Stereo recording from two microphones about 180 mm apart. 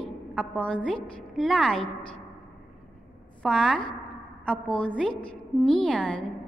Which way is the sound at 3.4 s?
5° left (ahead or behind).